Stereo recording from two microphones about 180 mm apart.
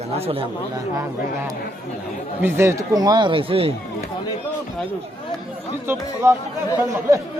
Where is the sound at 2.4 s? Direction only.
10° right (ahead or behind); by 3.7 s 30° right (ahead or behind).